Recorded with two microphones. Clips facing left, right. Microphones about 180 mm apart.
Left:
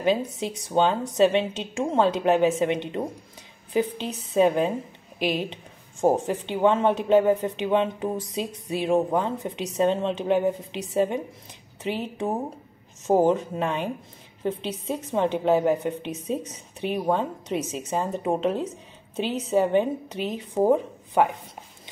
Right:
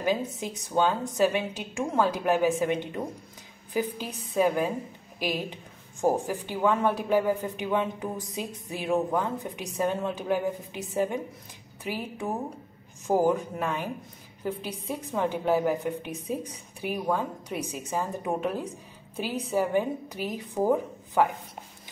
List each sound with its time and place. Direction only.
0.6 s a woman's voice: 20° left (ahead or behind)